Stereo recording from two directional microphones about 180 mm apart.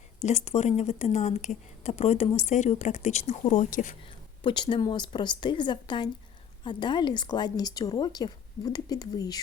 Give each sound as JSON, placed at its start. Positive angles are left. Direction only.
{"t": 0.2, "sound": "a woman's voice", "side_deg": 40}
{"t": 4.4, "sound": "a woman's voice", "side_deg": 25}